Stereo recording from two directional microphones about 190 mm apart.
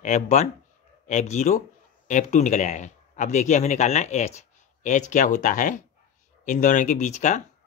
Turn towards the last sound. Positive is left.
turn(degrees=40)  # may be behind; listen again after turning